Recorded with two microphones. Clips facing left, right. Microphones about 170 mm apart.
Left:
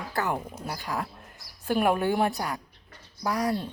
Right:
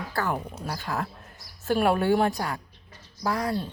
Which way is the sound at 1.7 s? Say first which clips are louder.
Right 2 dB; 15° left (ahead or behind).